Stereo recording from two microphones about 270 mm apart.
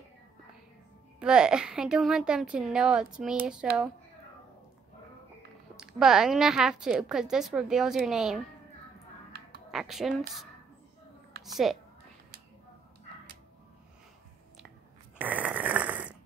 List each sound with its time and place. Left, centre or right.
1.2 s a woman's voice: centre
5.8 s a woman's voice: centre
9.7 s a woman's voice: centre
15.1 s snoring: centre